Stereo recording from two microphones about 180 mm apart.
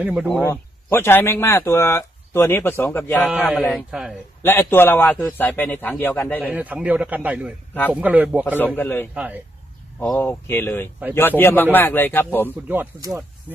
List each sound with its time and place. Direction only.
0.0 s a man's voice: 5° right (ahead or behind)
0.3 s speech: 10° left (ahead or behind)
3.8 s a man's voice: centre (ahead or behind)
4.4 s speech: 10° left (ahead or behind)
6.5 s a man's voice: 10° right (ahead or behind)
7.7 s a man's voice: 10° left (ahead or behind)
8.0 s a man's voice: 10° right (ahead or behind)
8.5 s speech: 10° left (ahead or behind)
9.1 s a man's voice: 10° right (ahead or behind)
10.0 s speech: 5° left (ahead or behind)
12.6 s a man's voice: 10° right (ahead or behind)
13.0 s speech: 20° right (ahead or behind)